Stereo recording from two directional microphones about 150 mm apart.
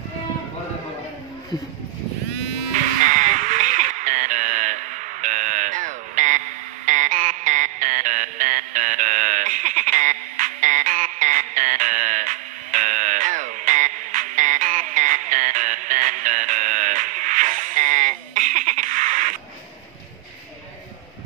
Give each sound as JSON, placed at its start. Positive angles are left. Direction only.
{"t": 2.7, "sound": "music", "side_deg": -55}